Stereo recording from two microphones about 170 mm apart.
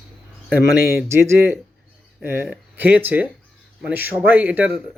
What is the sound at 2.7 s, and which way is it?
Speech, 10° right (ahead or behind).